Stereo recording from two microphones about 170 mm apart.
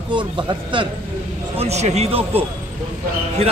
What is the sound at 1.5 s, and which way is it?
Speech, 40° right (ahead or behind).